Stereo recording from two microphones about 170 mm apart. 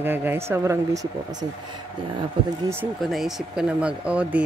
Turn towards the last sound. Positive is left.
turn(degrees=-5)  # may be behind; listen again after turning